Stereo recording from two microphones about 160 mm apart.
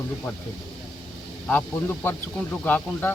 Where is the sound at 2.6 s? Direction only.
10° left (ahead or behind).